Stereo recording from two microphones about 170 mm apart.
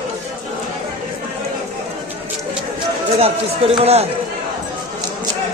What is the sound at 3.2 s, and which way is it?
Speech, 35° right (ahead or behind).